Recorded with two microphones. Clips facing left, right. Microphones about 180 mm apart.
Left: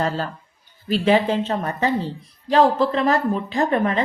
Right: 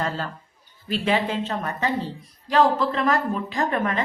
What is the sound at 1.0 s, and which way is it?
A woman's voice, 35° left (ahead or behind).